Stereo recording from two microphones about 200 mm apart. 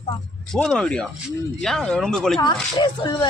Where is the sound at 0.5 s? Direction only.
5° left (ahead or behind).